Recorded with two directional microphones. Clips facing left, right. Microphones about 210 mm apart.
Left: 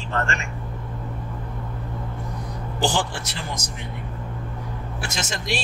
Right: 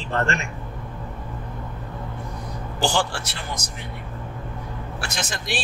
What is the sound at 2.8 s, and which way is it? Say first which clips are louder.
Speech: even; 20° left (ahead or behind).